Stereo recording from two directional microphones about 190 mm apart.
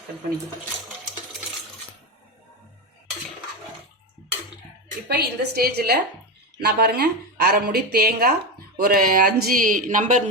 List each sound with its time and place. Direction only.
5.0 s speech: 55° right (ahead or behind)